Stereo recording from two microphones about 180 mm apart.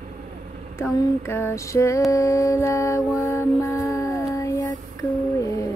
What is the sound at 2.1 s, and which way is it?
Mantra, 15° left (ahead or behind).